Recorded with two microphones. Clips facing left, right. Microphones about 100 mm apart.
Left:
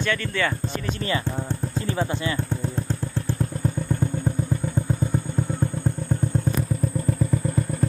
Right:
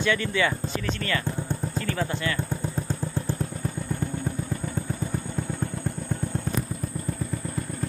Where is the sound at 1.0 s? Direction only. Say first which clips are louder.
Left 2 dB; 20° left (ahead or behind).